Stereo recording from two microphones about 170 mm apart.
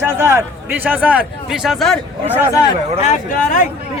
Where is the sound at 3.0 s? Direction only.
45° left (ahead or behind).